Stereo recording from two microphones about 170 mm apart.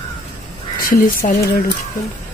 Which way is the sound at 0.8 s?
50° left (ahead or behind).